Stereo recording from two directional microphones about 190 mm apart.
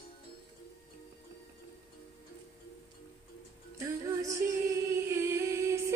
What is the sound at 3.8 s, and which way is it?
Female singing, 15° right (ahead or behind).